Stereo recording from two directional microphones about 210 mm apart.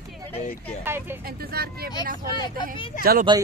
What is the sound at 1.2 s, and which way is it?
Speech, 45° right (ahead or behind).